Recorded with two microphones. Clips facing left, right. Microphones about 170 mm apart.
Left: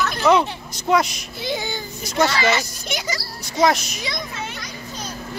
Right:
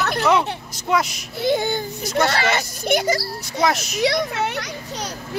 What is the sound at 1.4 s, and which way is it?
Speech, 55° right (ahead or behind).